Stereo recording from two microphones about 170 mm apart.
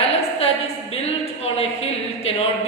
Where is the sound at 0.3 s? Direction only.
35° left (ahead or behind).